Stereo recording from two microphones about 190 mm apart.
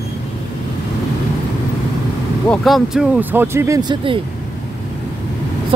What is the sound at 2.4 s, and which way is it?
Speech, 5° left (ahead or behind).